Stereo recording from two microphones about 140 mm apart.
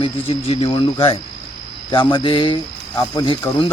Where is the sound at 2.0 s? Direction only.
35° left (ahead or behind).